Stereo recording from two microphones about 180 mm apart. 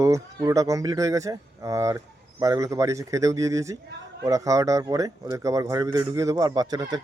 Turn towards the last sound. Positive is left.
turn(degrees=-20)  # may be behind; listen again after turning